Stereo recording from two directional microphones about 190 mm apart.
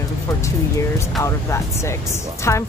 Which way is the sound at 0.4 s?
15° left (ahead or behind).